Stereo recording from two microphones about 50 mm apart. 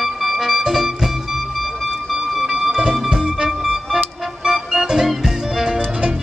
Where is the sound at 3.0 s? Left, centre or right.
Centre.